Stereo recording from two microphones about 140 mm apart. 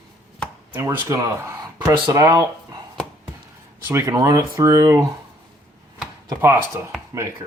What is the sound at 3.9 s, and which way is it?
Speech, 20° right (ahead or behind).